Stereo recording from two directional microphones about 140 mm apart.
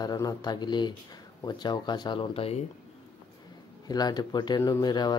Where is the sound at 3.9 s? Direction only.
30° left (ahead or behind).